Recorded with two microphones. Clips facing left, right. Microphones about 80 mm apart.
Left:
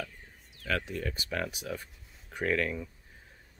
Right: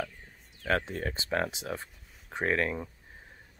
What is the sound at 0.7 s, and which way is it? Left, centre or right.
Speech, right.